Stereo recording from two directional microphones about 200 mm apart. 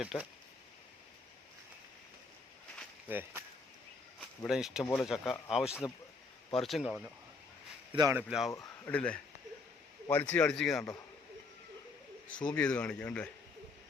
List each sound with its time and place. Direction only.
0.0 s speech: 5° right (ahead or behind)
3.1 s speech: 10° right (ahead or behind)
7.9 s speech: 15° right (ahead or behind)
8.3 s speech: centre (ahead or behind)
8.5 s a man's voice: 10° left (ahead or behind)
10.3 s speech: 5° left (ahead or behind)
12.5 s speech: 5° left (ahead or behind)